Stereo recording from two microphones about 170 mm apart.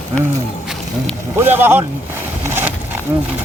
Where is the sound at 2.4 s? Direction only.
10° right (ahead or behind).